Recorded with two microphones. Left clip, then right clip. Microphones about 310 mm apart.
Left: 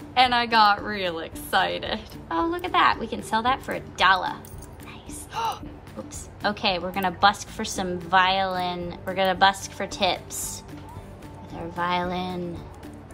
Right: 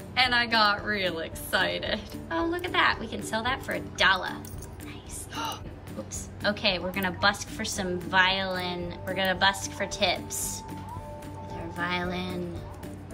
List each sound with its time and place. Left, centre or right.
0.1 s a woman's voice: centre
11.7 s a woman's voice: centre